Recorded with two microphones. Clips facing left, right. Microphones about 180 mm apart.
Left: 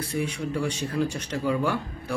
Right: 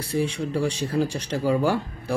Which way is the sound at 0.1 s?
30° right (ahead or behind).